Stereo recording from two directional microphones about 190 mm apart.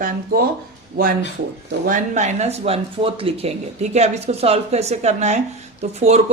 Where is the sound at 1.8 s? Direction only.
40° right (ahead or behind).